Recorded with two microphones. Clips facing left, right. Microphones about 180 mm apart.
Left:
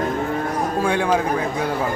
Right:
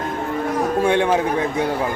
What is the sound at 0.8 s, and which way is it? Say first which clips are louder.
Speech: right 2 dB; 25° right (ahead or behind).